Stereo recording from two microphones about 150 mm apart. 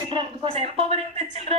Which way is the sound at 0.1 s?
35° right (ahead or behind).